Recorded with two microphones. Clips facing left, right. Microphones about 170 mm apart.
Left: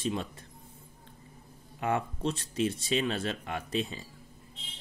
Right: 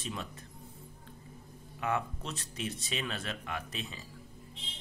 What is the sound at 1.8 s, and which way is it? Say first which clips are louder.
Speech: left 4 dB; 30° left (ahead or behind).